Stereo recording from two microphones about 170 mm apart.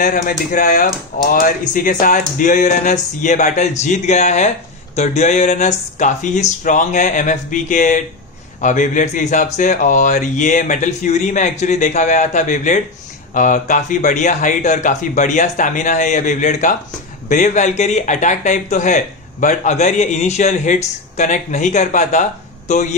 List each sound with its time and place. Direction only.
0.0 s speech: 50° left (ahead or behind)